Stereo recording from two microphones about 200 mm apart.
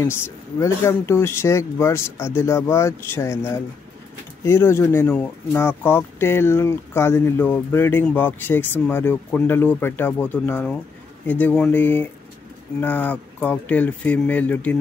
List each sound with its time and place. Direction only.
0.0 s speech: 15° left (ahead or behind)